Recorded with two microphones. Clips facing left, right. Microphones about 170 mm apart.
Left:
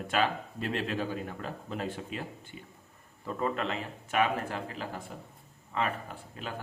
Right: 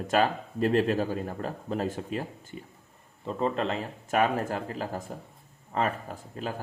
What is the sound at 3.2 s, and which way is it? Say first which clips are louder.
Speech: right 4 dB; 25° right (ahead or behind).